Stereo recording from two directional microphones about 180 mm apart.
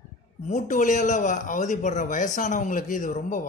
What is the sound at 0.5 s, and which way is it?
A man's voice, 45° left (ahead or behind).